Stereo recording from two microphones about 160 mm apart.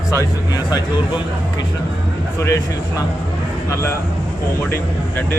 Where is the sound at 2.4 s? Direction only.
20° left (ahead or behind).